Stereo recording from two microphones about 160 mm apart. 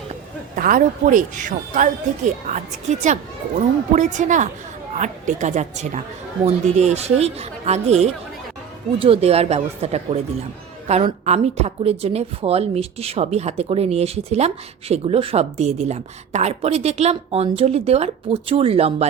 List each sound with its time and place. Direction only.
0.5 s speech: 60° right (ahead or behind)
3.9 s a woman's voice: 50° right (ahead or behind)